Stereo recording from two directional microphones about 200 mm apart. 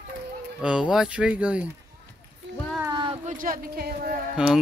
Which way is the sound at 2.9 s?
20° right (ahead or behind).